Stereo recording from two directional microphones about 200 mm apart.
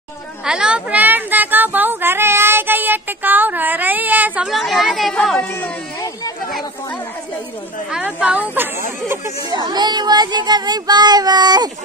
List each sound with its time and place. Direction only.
0.5 s child singing: 5° right (ahead or behind)
7.9 s a sound: 5° right (ahead or behind)
9.1 s speech: 15° right (ahead or behind)